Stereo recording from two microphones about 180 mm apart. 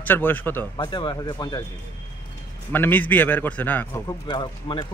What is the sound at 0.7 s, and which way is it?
Speech, 25° left (ahead or behind).